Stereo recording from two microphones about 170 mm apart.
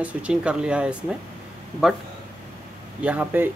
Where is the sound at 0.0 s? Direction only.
5° right (ahead or behind).